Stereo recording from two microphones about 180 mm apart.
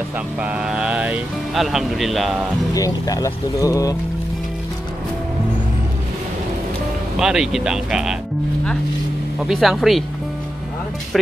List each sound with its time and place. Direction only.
0.4 s speech: 5° right (ahead or behind)
2.7 s speech: 20° left (ahead or behind)
7.2 s speech: 5° right (ahead or behind)
9.4 s speech: centre (ahead or behind)